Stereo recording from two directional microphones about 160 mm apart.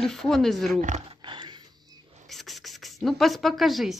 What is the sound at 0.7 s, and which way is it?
Speech, 50° right (ahead or behind).